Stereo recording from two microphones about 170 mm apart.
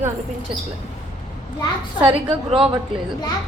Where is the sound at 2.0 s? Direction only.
30° right (ahead or behind).